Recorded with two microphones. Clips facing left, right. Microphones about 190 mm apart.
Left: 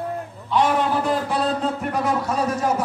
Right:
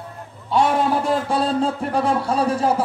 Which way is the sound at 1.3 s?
30° right (ahead or behind).